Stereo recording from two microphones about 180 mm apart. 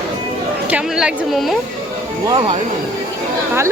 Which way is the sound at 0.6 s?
5° right (ahead or behind).